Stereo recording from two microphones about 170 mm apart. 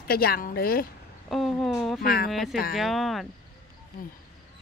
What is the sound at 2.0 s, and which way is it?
Speech, 60° left (ahead or behind).